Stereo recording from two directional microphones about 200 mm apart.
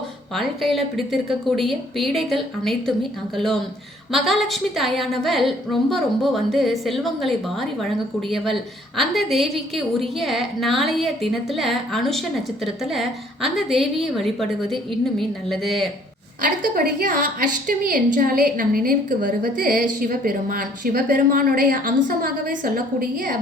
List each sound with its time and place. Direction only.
0.3 s a woman's voice: centre (ahead or behind)
9.0 s a woman's voice: centre (ahead or behind)
16.4 s a woman's voice: 45° right (ahead or behind)